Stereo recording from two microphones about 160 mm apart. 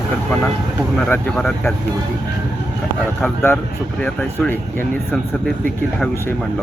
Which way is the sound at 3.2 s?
10° left (ahead or behind).